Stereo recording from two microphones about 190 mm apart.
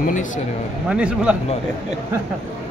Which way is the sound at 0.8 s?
5° right (ahead or behind).